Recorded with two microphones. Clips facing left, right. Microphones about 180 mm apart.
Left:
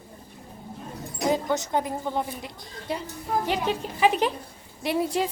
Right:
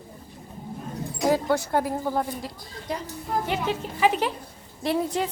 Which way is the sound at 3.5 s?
15° left (ahead or behind).